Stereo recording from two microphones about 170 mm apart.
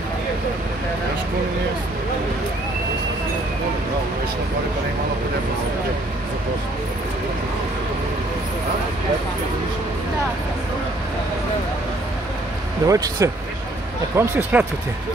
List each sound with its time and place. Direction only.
12.8 s speech: 20° right (ahead or behind)